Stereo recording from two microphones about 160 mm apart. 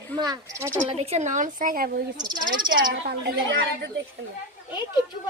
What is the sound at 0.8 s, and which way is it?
A woman's voice, 40° right (ahead or behind).